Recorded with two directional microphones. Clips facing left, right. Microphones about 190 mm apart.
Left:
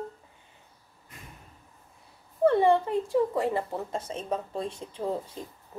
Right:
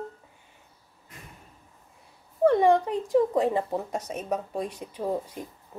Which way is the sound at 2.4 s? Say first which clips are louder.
Right 1 dB; 15° right (ahead or behind).